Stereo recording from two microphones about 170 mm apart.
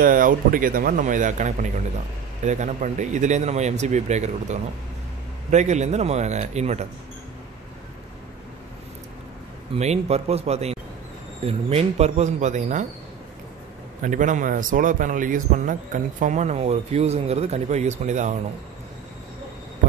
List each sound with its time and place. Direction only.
0.0 s a man's voice: 55° right (ahead or behind)
9.8 s a man's voice: 40° right (ahead or behind)
14.0 s speech: 50° right (ahead or behind)